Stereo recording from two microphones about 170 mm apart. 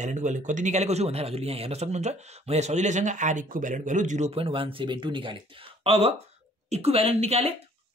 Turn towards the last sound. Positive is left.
turn(degrees=-35)  # may be behind; listen again after turning